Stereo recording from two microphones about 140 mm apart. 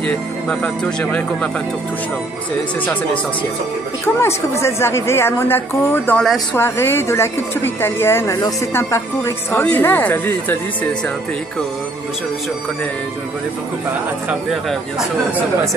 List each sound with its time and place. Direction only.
0.0 s a woman's voice: 5° left (ahead or behind)
4.0 s a woman's voice: 20° left (ahead or behind)
6.0 s speech: 5° left (ahead or behind)
6.5 s a woman's voice: 15° left (ahead or behind)
14.5 s speech: centre (ahead or behind)